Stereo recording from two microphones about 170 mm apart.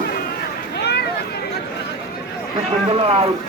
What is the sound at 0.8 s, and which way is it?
Vehicle, 75° left (ahead or behind).